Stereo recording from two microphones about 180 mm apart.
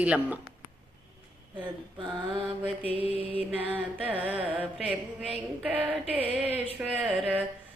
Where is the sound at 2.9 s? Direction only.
30° right (ahead or behind).